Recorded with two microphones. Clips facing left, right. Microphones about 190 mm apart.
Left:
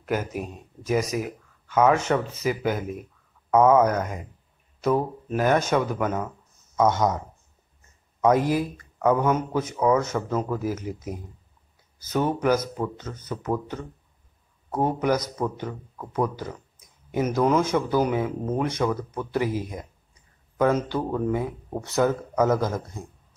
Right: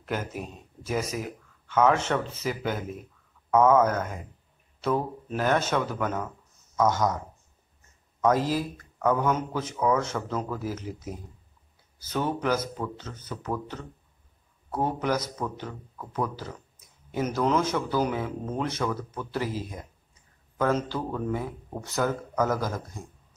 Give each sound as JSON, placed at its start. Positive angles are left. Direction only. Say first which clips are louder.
{"t": 0.0, "sound": "a man's voice", "louder": "left 5 dB", "side_deg": 10}
{"t": 6.8, "sound": "a man's voice", "louder": "left 3 dB", "side_deg": 20}
{"t": 8.4, "sound": "speech", "louder": "left 4 dB", "side_deg": 60}
{"t": 9.0, "sound": "a man's voice", "louder": "left 3 dB", "side_deg": 10}
{"t": 14.7, "sound": "a man's voice", "louder": "left 4 dB", "side_deg": 15}